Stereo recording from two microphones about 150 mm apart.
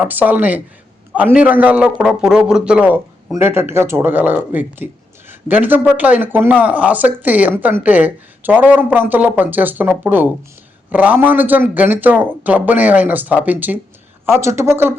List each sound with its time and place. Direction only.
0.0 s a man's voice: 10° right (ahead or behind)